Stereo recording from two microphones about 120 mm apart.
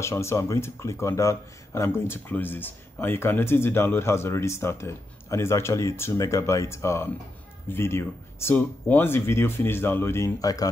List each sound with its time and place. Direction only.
0.0 s speech: 25° left (ahead or behind)